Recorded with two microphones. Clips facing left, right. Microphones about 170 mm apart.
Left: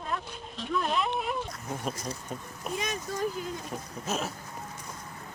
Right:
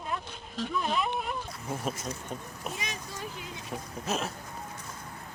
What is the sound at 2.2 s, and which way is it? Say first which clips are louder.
Speech: left 1 dB; centre (ahead or behind).